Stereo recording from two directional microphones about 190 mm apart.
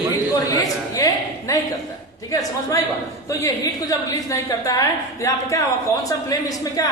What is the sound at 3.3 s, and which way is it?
A woman's voice, 15° left (ahead or behind).